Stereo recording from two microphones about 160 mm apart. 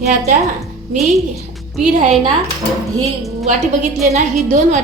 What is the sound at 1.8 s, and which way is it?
Speech, 50° right (ahead or behind).